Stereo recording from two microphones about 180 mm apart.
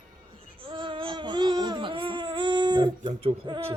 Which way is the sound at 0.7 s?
30° right (ahead or behind).